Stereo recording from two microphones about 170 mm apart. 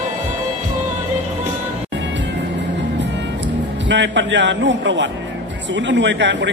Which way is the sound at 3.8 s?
90° right.